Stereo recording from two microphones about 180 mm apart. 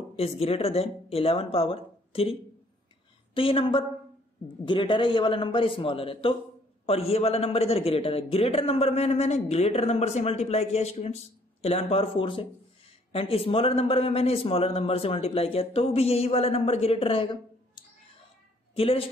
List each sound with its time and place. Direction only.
0.1 s a man's voice: 35° left (ahead or behind)
3.3 s a man's voice: 30° left (ahead or behind)
18.8 s a man's voice: 30° left (ahead or behind)